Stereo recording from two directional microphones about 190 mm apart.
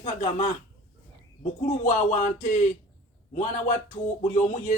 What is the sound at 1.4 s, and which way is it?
A man's voice, 40° left (ahead or behind).